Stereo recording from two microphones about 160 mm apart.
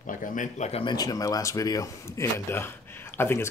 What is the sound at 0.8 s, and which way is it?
Speech, 25° left (ahead or behind).